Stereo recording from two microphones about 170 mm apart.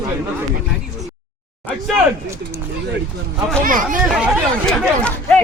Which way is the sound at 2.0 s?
15° right (ahead or behind).